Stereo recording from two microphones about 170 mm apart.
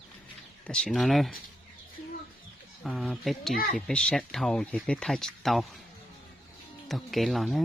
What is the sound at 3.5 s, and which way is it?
Speech, 55° left (ahead or behind).